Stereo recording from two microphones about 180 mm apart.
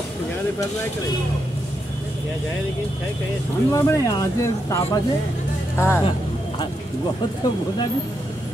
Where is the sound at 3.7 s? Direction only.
20° left (ahead or behind).